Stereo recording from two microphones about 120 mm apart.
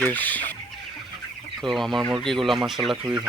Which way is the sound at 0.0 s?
15° left (ahead or behind).